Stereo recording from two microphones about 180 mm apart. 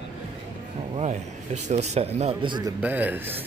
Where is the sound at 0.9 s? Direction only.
40° right (ahead or behind).